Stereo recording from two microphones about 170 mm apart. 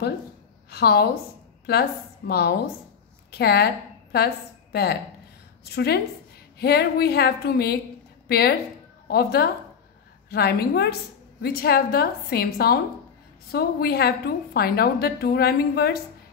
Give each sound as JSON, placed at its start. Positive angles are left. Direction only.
{"t": 0.7, "sound": "a woman's voice", "side_deg": 70}
{"t": 5.7, "sound": "a woman's voice", "side_deg": 70}